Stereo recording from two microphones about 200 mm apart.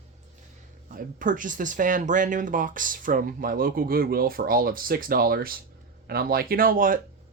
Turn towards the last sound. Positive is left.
turn(degrees=-45)  # may be behind; listen again after turning